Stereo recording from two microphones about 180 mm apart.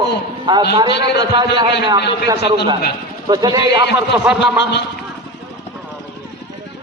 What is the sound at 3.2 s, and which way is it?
Speech, 20° right (ahead or behind).